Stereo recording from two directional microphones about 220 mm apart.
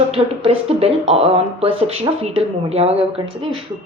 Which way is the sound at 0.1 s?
25° right (ahead or behind).